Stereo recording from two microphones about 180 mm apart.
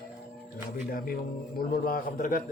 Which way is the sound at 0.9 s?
55° left (ahead or behind).